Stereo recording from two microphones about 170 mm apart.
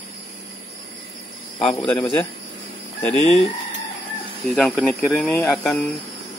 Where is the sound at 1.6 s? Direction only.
5° left (ahead or behind).